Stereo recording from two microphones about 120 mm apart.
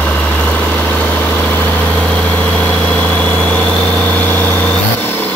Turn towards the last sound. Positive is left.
turn(degrees=15)  # may be behind; listen again after turning